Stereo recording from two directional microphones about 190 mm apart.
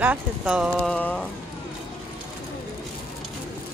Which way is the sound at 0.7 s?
5° left (ahead or behind).